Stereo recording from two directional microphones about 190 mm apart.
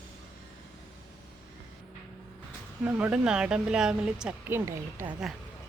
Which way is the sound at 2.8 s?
10° right (ahead or behind).